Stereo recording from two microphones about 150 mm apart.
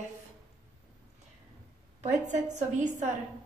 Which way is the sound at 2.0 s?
55° right (ahead or behind).